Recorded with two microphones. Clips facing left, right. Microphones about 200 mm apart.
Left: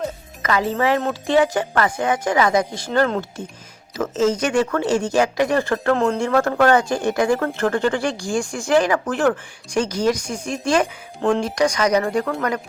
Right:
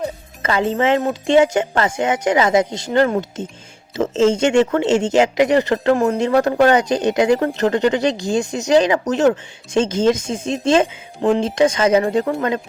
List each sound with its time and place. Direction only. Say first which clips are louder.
0.4 s speech: right 2 dB; 25° right (ahead or behind)